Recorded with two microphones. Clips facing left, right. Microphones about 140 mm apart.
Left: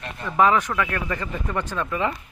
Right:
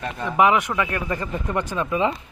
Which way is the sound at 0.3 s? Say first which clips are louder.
Right 1 dB; 15° right (ahead or behind).